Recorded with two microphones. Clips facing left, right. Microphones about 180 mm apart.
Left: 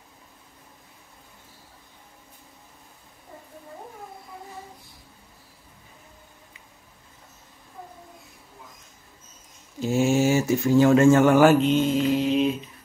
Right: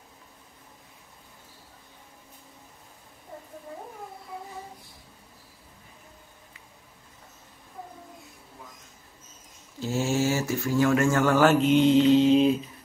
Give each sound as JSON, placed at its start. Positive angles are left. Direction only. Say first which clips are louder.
{"t": 9.8, "sound": "speech", "louder": "left 5 dB", "side_deg": 15}
{"t": 11.6, "sound": "mantra", "louder": "right 3 dB", "side_deg": -15}